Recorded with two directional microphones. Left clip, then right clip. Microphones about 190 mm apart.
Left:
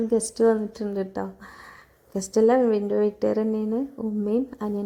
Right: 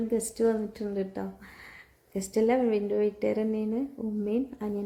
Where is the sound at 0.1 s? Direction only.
25° left (ahead or behind).